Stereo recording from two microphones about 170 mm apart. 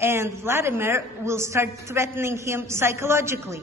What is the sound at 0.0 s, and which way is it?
Speech, 15° right (ahead or behind).